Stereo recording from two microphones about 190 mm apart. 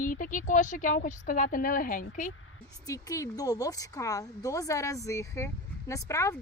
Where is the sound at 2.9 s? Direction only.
15° left (ahead or behind).